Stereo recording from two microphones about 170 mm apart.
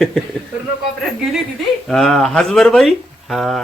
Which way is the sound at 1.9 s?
Centre (ahead or behind).